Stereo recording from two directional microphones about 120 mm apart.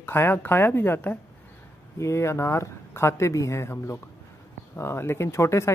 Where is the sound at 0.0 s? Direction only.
20° left (ahead or behind).